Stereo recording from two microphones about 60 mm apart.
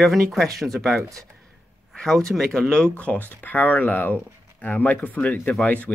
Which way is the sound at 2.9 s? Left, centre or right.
Left.